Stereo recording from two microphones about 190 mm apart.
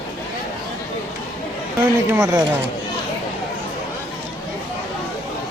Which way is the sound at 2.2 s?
20° right (ahead or behind).